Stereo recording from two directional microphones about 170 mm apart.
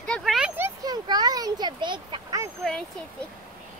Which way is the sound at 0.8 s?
25° right (ahead or behind).